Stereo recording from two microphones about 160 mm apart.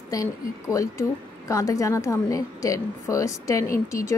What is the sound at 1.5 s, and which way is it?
A woman's voice, 20° left (ahead or behind).